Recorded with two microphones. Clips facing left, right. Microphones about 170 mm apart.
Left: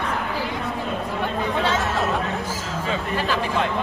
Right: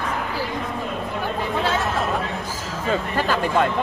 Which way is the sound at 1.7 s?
Centre (ahead or behind).